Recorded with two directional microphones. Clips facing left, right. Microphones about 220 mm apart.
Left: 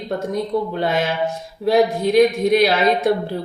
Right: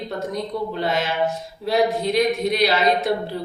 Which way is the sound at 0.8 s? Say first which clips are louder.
Left 2 dB; 50° left (ahead or behind).